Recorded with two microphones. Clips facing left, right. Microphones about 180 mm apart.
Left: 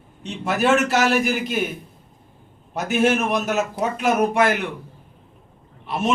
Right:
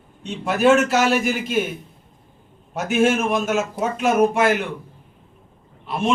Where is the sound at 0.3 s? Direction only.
Centre (ahead or behind).